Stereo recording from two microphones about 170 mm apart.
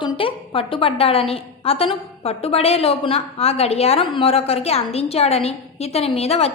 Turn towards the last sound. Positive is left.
turn(degrees=35)  # may be behind; listen again after turning